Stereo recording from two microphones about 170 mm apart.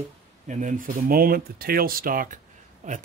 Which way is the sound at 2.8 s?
45° right (ahead or behind).